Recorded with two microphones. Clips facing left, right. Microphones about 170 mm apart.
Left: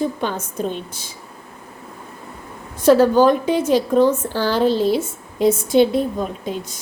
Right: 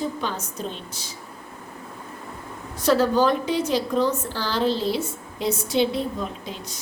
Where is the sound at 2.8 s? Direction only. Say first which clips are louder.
Left 7 dB; 50° left (ahead or behind).